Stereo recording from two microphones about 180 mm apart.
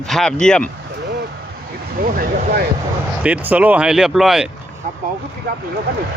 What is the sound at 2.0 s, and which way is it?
Vehicle, 50° right (ahead or behind).